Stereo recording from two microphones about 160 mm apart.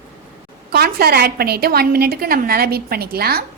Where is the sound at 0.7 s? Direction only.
75° right (ahead or behind).